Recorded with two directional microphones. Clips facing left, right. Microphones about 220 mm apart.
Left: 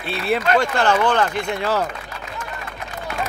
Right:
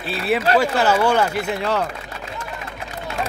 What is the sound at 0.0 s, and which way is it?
Speech, centre (ahead or behind).